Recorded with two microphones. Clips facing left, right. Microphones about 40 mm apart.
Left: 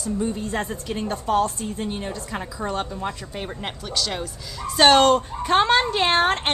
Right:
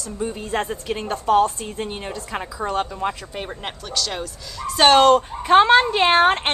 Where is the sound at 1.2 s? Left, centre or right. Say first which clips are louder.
Right 5 dB; right.